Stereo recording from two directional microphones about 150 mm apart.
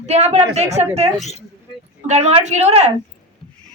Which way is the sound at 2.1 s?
45° right (ahead or behind).